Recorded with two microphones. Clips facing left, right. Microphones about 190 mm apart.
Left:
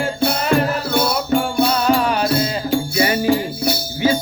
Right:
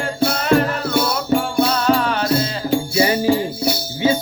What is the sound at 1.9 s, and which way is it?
Music, 10° left (ahead or behind).